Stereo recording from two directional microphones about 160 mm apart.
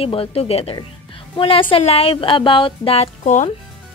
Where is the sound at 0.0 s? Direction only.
35° left (ahead or behind).